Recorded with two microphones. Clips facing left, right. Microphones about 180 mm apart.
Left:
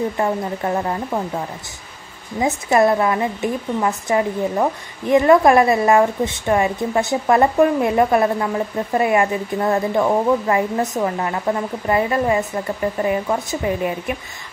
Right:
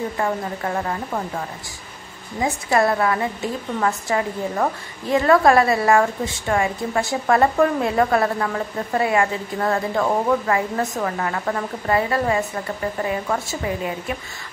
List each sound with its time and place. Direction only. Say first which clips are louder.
0.2 s a woman's voice: left 3 dB; 25° left (ahead or behind)
2.4 s a woman's voice: left 3 dB; 20° left (ahead or behind)